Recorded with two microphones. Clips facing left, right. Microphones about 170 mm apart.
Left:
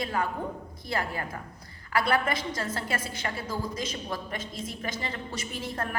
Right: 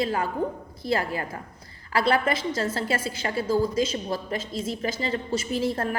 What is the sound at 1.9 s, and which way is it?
A woman's voice, 30° right (ahead or behind).